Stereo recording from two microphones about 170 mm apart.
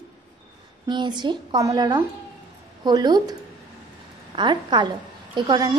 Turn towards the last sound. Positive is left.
turn(degrees=-25)  # may be behind; listen again after turning